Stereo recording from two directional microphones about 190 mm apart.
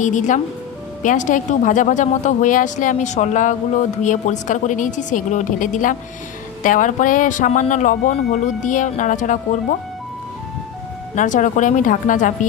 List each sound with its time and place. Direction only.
0.0 s speech: 40° left (ahead or behind)
11.1 s speech: 40° left (ahead or behind)